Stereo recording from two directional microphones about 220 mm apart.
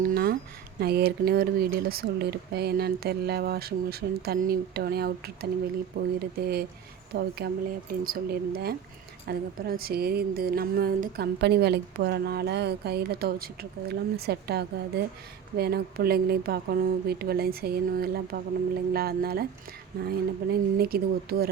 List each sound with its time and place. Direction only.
0.0 s a woman's voice: 45° right (ahead or behind)